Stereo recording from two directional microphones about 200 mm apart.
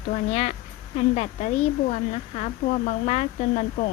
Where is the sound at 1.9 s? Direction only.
35° left (ahead or behind).